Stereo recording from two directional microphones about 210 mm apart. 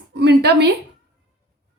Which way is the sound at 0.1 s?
55° right (ahead or behind).